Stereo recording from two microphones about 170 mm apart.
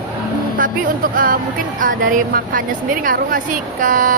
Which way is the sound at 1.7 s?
50° right (ahead or behind).